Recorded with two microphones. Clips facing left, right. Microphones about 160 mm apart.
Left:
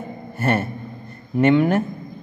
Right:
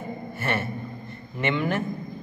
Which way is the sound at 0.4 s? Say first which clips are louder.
Left 7 dB; 40° left (ahead or behind).